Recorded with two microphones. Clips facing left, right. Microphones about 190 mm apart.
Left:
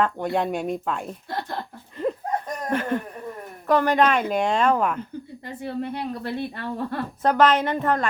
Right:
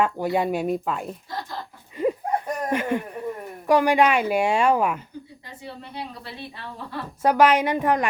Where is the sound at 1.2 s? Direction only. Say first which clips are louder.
Left 3 dB; 60° left (ahead or behind).